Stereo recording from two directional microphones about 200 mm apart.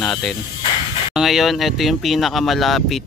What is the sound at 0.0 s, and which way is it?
Speech, centre (ahead or behind).